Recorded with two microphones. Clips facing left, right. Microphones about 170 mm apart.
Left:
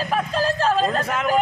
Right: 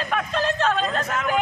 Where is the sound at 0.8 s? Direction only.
35° left (ahead or behind).